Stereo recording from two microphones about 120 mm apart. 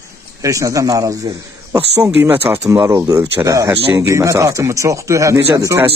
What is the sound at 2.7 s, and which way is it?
Speech, 25° right (ahead or behind).